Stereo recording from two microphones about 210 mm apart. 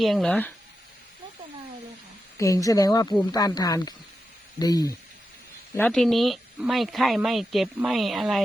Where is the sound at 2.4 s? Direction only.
15° left (ahead or behind).